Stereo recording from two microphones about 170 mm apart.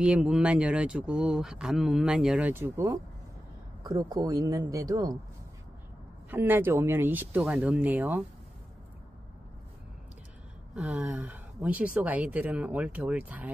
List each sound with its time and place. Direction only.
0.0 s speech: 5° right (ahead or behind); by 5.1 s 20° right (ahead or behind)
6.3 s speech: 10° right (ahead or behind)
10.7 s speech: 5° right (ahead or behind)